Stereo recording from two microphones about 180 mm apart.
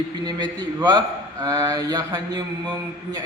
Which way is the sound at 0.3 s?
25° right (ahead or behind).